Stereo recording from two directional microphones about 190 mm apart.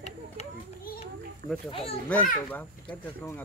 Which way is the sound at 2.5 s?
10° left (ahead or behind).